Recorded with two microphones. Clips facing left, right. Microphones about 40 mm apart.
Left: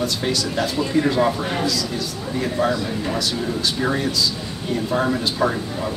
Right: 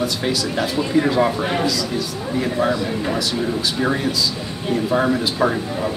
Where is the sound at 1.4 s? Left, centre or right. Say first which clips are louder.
Right 3 dB; right.